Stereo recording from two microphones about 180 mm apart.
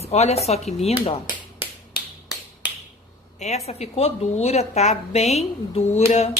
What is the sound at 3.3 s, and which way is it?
A woman's voice, 40° left (ahead or behind).